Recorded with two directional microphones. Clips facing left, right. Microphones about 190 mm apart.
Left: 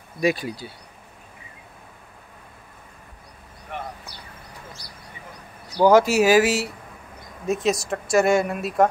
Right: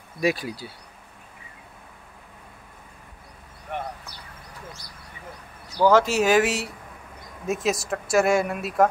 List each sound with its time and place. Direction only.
0.2 s speech: 5° right (ahead or behind)
5.8 s speech: 10° left (ahead or behind)